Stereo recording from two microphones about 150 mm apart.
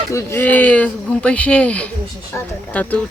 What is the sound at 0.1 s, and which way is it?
Speech, 20° left (ahead or behind).